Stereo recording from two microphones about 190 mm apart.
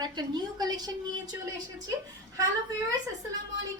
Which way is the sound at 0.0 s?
20° right (ahead or behind).